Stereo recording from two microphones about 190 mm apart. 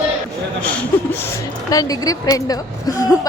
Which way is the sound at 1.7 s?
20° left (ahead or behind).